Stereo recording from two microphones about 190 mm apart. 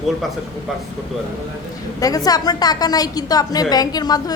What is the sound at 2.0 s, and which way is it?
A woman's voice, 20° left (ahead or behind).